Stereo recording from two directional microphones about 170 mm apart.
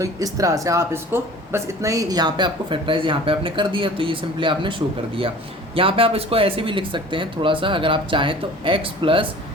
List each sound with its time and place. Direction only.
0.0 s speech: 20° right (ahead or behind)
5.7 s speech: 30° right (ahead or behind)